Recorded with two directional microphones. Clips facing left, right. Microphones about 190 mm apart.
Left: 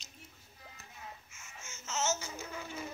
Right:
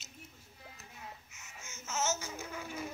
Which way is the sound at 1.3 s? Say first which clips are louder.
Left 1 dB; 60° right (ahead or behind).